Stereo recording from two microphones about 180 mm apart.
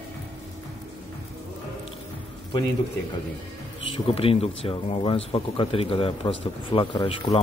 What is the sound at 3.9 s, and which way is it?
Speech, 30° left (ahead or behind).